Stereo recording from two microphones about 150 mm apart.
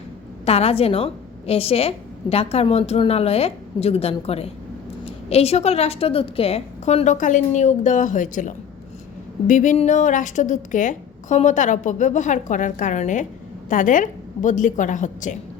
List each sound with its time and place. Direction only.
0.4 s a woman's voice: 45° left (ahead or behind)